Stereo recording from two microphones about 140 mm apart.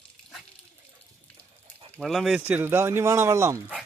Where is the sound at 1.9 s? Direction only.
Centre (ahead or behind).